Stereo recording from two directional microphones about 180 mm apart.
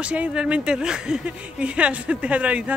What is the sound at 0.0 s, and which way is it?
A woman's voice, 5° right (ahead or behind).